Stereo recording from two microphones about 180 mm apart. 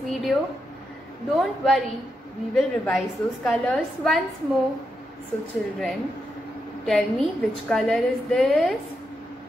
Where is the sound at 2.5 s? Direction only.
5° left (ahead or behind).